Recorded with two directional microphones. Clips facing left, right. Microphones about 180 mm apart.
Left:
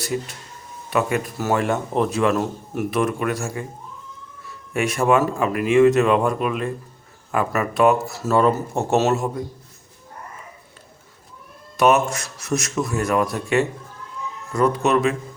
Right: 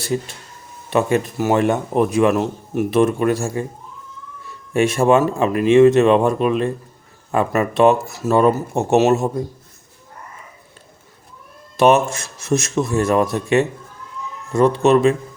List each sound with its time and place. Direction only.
0.0 s speech: 25° right (ahead or behind)
4.7 s speech: 25° right (ahead or behind)
11.8 s speech: 25° right (ahead or behind)